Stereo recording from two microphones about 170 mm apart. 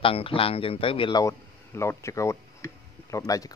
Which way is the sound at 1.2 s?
15° left (ahead or behind).